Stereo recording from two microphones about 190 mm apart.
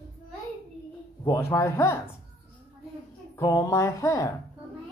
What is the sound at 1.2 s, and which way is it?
Speech, 15° left (ahead or behind).